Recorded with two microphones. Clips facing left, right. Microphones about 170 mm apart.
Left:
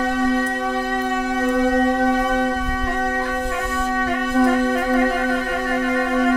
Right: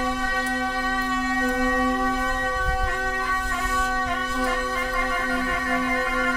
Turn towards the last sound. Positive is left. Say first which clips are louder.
# left 9 dB
turn(degrees=60)  # may be behind; listen again after turning